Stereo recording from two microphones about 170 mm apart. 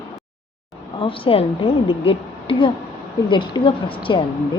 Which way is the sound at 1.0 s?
30° left (ahead or behind).